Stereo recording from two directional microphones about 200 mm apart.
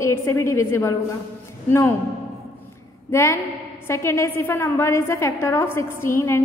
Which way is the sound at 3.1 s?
15° left (ahead or behind).